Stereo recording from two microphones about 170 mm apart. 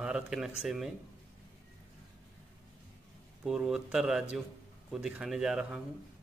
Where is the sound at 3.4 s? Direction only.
5° right (ahead or behind).